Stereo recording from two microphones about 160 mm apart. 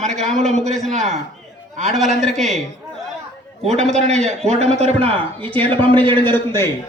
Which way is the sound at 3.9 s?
45° right (ahead or behind).